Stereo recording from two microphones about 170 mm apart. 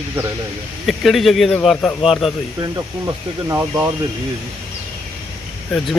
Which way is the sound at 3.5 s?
10° right (ahead or behind).